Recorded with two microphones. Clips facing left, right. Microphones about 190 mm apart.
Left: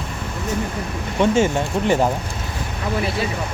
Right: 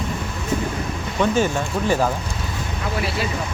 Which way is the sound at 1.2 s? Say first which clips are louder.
Left 2 dB; 25° left (ahead or behind).